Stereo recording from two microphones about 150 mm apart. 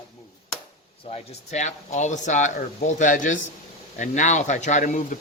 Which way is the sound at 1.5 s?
50° left (ahead or behind).